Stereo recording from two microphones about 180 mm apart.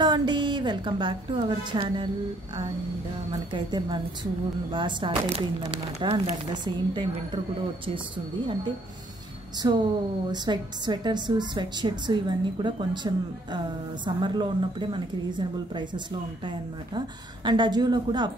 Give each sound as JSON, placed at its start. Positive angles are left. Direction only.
{"t": 0.0, "sound": "a woman's voice", "side_deg": -25}
{"t": 3.5, "sound": "a woman's voice", "side_deg": -25}
{"t": 9.6, "sound": "a woman's voice", "side_deg": -20}
{"t": 17.5, "sound": "a woman's voice", "side_deg": -25}